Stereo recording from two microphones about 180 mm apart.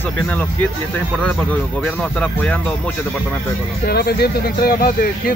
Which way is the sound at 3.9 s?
60° left (ahead or behind).